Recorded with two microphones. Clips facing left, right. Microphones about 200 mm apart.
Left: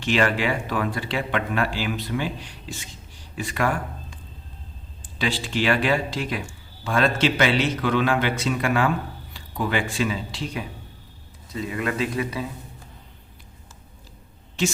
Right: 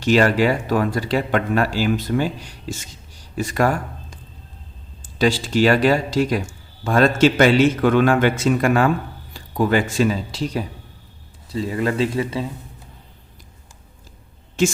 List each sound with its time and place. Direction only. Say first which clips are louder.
0.0 s speech: right 6 dB; 40° right (ahead or behind)
14.6 s speech: right 6 dB; 45° right (ahead or behind)